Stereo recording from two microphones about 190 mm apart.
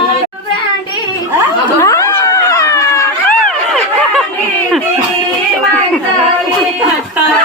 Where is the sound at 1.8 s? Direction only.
15° left (ahead or behind).